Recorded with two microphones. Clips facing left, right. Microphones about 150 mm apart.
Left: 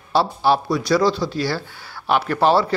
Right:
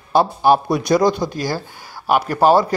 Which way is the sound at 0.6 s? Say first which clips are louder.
Right 2 dB; 20° right (ahead or behind).